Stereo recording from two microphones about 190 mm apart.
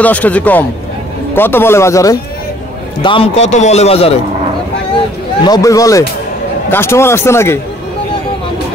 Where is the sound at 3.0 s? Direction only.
30° left (ahead or behind).